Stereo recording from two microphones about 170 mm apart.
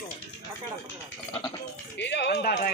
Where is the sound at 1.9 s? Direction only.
90° left; by 2.7 s 70° left (ahead or behind).